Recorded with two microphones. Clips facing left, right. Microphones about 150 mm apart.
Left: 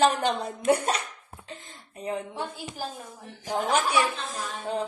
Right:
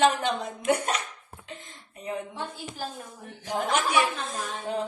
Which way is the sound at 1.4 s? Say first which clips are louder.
Even; 35° left (ahead or behind).